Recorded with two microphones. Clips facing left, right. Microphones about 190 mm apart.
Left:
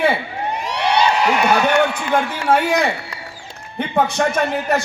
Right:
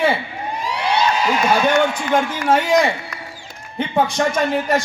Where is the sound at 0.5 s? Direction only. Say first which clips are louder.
Left 1 dB; 70° left (ahead or behind).